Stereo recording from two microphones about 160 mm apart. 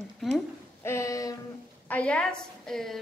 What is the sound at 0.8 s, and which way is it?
Speech, 15° left (ahead or behind).